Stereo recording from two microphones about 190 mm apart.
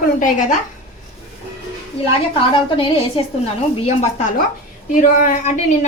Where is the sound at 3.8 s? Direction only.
40° left (ahead or behind).